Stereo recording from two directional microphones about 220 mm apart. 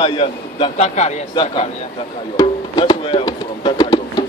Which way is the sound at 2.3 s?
20° left (ahead or behind).